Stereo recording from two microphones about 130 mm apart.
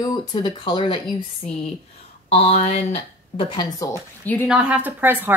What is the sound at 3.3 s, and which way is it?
Speech, 40° left (ahead or behind).